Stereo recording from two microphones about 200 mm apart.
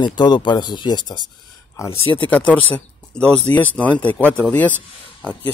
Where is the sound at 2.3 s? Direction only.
10° left (ahead or behind).